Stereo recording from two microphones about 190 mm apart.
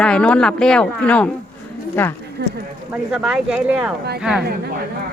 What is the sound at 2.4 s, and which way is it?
Speech, 60° right (ahead or behind).